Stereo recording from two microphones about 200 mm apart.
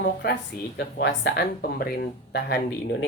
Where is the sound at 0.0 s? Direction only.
55° left (ahead or behind).